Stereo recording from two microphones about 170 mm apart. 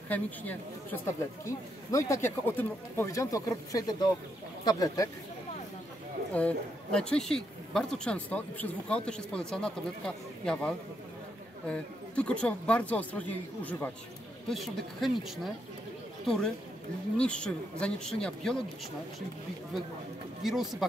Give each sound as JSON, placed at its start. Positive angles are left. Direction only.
{"t": 0.1, "sound": "speech", "side_deg": 10}
{"t": 6.3, "sound": "a woman's voice", "side_deg": 5}
{"t": 17.2, "sound": "a woman's voice", "side_deg": 5}
{"t": 20.4, "sound": "a woman's voice", "side_deg": 0}